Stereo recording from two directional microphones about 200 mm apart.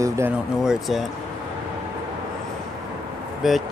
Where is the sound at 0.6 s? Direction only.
Centre (ahead or behind).